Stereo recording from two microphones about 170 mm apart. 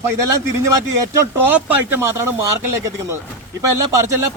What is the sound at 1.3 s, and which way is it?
Speech, 10° right (ahead or behind).